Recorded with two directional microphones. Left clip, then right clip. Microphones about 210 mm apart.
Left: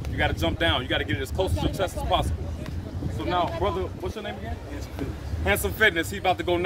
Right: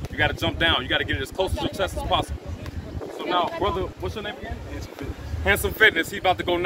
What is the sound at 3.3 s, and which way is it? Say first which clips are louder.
Speech: right 2 dB; 10° left (ahead or behind).